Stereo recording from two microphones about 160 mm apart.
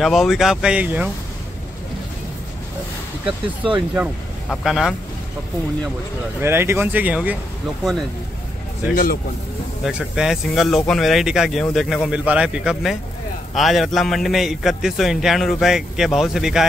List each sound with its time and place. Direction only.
0.0 s a man's voice: centre (ahead or behind)
3.3 s speech: 30° right (ahead or behind)
4.5 s a man's voice: centre (ahead or behind)
6.4 s speech: 15° right (ahead or behind)
8.9 s speech: 65° left (ahead or behind)
9.8 s a man's voice: 5° right (ahead or behind)